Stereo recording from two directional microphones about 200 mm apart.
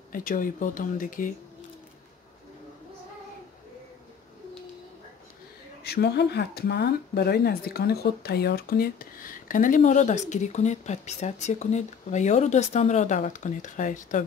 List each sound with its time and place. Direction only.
0.1 s speech: 45° left (ahead or behind)
5.9 s speech: 55° left (ahead or behind); by 14.2 s 40° left (ahead or behind)